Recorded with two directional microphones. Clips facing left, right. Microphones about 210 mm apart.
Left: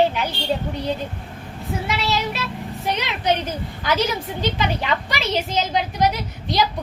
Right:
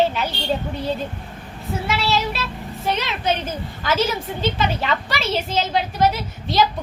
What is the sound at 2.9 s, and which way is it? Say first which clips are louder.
A woman's voice: even; 15° left (ahead or behind).